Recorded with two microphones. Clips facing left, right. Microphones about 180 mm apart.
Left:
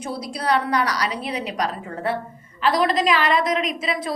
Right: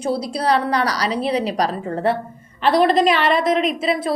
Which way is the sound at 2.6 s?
60° right (ahead or behind).